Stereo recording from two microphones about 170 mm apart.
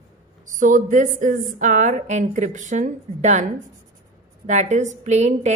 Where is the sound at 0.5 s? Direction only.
50° right (ahead or behind).